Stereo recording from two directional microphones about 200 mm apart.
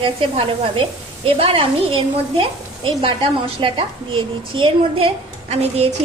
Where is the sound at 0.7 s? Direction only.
30° right (ahead or behind).